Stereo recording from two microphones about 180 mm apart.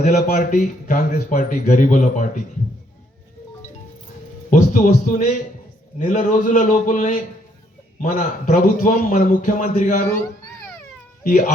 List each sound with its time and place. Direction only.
0.3 s a man's voice: 40° left (ahead or behind)
4.5 s a man's voice: 45° left (ahead or behind)
11.2 s speech: 45° left (ahead or behind)